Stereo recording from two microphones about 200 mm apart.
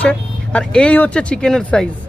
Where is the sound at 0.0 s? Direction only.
5° left (ahead or behind).